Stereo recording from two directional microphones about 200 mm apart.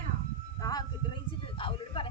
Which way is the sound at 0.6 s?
20° left (ahead or behind).